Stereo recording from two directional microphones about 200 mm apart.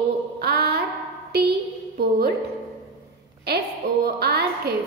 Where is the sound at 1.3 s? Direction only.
50° right (ahead or behind).